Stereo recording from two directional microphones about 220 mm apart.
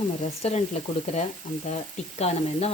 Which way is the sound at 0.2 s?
30° left (ahead or behind).